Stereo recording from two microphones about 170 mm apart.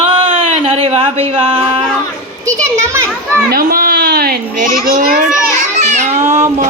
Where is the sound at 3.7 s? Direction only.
60° right (ahead or behind).